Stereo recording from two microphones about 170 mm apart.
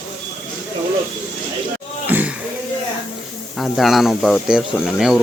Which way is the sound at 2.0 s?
10° right (ahead or behind).